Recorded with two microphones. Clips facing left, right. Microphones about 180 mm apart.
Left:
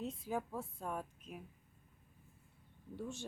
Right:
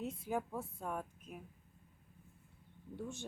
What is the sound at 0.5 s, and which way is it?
Speech, centre (ahead or behind).